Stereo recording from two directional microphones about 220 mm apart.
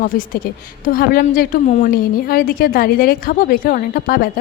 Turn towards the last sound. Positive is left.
turn(degrees=40)  # may be behind; listen again after turning